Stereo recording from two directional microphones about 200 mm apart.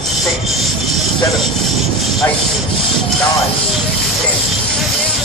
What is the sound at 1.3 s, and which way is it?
Rub, centre (ahead or behind).